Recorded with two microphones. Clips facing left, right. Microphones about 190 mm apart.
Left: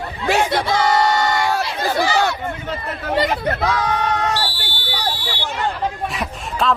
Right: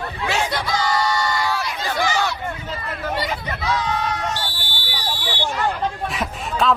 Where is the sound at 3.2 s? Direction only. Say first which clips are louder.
Left 7 dB; 55° left (ahead or behind).